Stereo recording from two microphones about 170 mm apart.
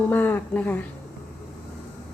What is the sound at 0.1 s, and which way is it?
Speech, 10° left (ahead or behind).